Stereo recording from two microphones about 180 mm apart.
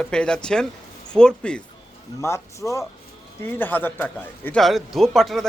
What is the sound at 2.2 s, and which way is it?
A man's voice, 15° left (ahead or behind).